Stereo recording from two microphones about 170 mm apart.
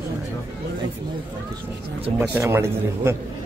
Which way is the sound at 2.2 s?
15° right (ahead or behind).